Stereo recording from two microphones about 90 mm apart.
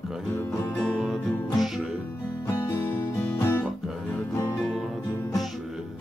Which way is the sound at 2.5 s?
35° left (ahead or behind).